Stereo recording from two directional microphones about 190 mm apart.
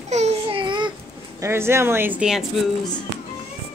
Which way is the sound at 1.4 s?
15° right (ahead or behind).